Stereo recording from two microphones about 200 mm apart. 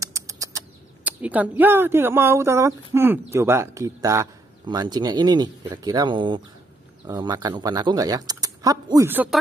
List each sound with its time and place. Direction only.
0.0 s bird flight: 15° right (ahead or behind)
1.0 s speech: 5° right (ahead or behind)